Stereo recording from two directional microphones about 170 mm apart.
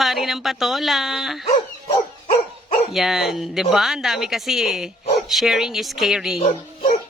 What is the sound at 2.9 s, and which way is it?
Speech, centre (ahead or behind).